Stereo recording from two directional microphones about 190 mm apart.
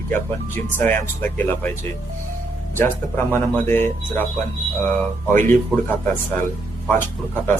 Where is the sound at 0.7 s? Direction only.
10° left (ahead or behind).